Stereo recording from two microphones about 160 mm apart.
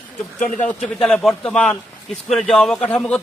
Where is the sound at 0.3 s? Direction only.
50° left (ahead or behind).